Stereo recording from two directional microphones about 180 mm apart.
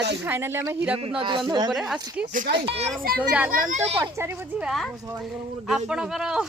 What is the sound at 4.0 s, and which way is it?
Speech, 15° right (ahead or behind).